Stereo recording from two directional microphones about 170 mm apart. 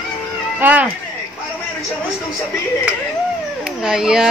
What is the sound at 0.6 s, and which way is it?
Speech, 10° right (ahead or behind).